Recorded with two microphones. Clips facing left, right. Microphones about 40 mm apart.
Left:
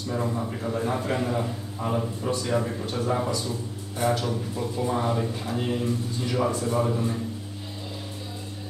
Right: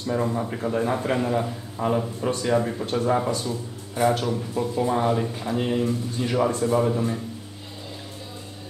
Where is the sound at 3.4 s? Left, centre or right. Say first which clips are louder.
Right 2 dB; centre.